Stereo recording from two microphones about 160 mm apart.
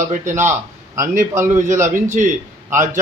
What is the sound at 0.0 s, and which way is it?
Speech, 50° right (ahead or behind).